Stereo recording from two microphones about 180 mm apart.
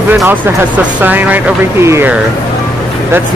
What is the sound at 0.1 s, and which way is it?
Speech, 10° right (ahead or behind).